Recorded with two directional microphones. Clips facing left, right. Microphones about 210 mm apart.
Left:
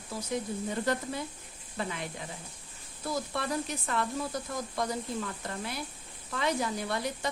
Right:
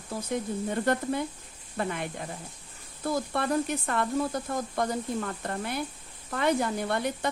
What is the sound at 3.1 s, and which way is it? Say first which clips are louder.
Speech: right 5 dB; 55° right (ahead or behind).